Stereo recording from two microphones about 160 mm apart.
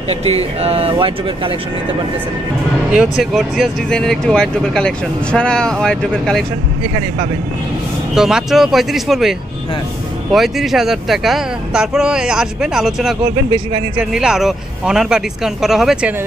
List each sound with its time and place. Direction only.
0.1 s speech: 40° right (ahead or behind)
2.9 s speech: centre (ahead or behind)
8.1 s speech: 5° right (ahead or behind)
10.3 s speech: centre (ahead or behind)
14.1 s speech: 5° right (ahead or behind)